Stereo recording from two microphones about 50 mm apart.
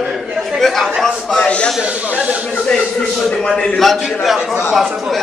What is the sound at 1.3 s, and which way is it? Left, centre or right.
Speech, left.